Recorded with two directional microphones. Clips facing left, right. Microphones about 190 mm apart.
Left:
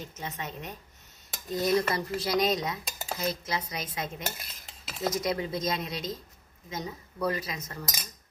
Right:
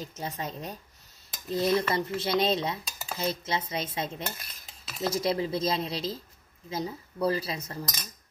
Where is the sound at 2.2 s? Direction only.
25° right (ahead or behind).